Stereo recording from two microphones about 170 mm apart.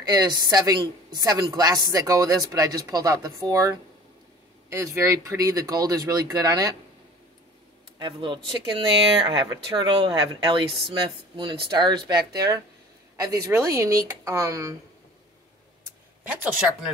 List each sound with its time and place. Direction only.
0.0 s a woman's voice: 25° right (ahead or behind)
8.0 s a woman's voice: 30° right (ahead or behind)